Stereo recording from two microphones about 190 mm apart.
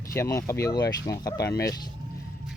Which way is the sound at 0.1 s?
15° left (ahead or behind).